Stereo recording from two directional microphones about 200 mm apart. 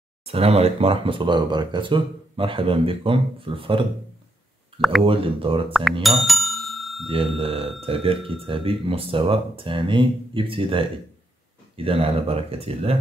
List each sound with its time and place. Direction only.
0.2 s speech: 30° right (ahead or behind)
5.0 s speech: 25° right (ahead or behind)
5.7 s speech: centre (ahead or behind)
6.0 s bicycle bell: centre (ahead or behind)
7.1 s speech: 25° right (ahead or behind)